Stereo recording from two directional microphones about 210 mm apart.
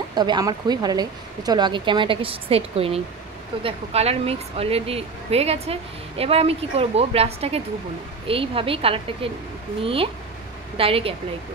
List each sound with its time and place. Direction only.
0.1 s speech: 20° right (ahead or behind)
10.8 s speech: 25° right (ahead or behind)